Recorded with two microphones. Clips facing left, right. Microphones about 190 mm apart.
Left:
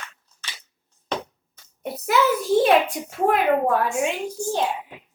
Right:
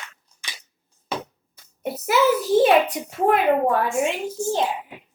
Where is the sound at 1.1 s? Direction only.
5° right (ahead or behind).